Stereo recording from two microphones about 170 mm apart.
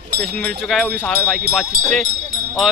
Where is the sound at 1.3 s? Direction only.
Centre (ahead or behind).